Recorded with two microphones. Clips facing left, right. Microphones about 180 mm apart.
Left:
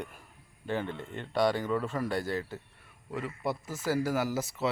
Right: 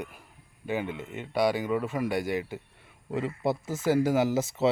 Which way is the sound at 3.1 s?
25° right (ahead or behind).